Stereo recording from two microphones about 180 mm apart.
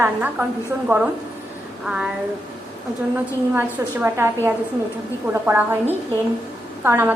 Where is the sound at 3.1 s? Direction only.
10° right (ahead or behind).